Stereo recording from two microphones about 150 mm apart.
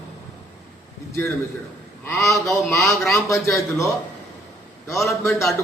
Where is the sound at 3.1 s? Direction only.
20° left (ahead or behind).